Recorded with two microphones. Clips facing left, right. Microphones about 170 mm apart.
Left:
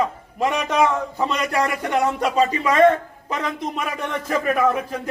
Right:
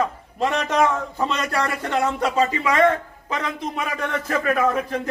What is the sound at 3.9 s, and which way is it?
Speech, 15° left (ahead or behind).